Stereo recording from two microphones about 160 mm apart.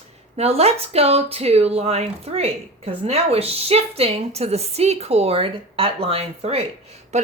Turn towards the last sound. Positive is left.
turn(degrees=-45)  # may be behind; listen again after turning